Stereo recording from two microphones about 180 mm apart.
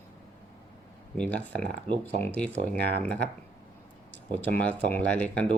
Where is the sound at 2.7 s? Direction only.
65° right (ahead or behind).